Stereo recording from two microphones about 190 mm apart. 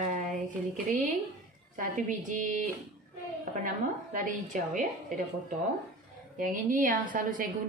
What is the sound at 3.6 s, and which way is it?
Speech, 40° right (ahead or behind).